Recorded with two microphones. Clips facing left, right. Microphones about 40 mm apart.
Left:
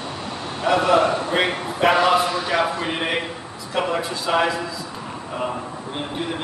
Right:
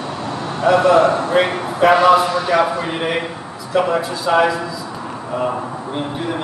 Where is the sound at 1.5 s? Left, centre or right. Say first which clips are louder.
Right 4 dB; centre.